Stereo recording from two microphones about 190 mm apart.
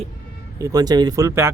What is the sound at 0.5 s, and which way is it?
Speech, 20° right (ahead or behind).